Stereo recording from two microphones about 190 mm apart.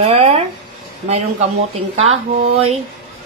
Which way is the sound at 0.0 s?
35° right (ahead or behind).